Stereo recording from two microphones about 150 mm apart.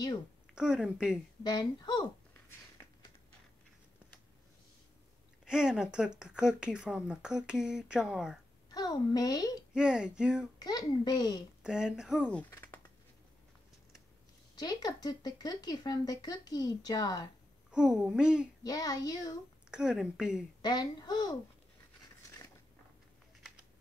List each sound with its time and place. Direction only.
0.6 s speech: 5° right (ahead or behind)
1.4 s speech: 30° left (ahead or behind)
5.4 s speech: 5° right (ahead or behind)
8.6 s speech: 25° left (ahead or behind)
9.8 s speech: 5° right (ahead or behind)
10.6 s speech: 25° left (ahead or behind)
11.6 s speech: 5° right (ahead or behind)
12.3 s speech: 10° left (ahead or behind)
12.5 s a sound: 15° left (ahead or behind)
14.5 s speech: 25° left (ahead or behind)
17.6 s speech: 5° right (ahead or behind)
18.6 s speech: 25° left (ahead or behind)
19.7 s speech: 5° right (ahead or behind)
20.6 s speech: 30° left (ahead or behind)